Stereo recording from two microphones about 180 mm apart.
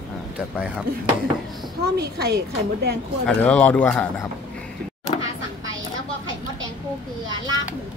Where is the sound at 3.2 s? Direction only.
10° left (ahead or behind).